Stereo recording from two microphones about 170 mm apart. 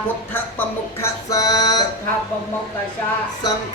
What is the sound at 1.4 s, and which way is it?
Music, 20° left (ahead or behind).